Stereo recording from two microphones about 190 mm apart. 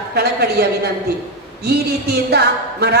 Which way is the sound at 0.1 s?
55° right (ahead or behind).